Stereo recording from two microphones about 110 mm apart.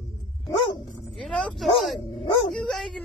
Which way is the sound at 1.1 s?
10° left (ahead or behind).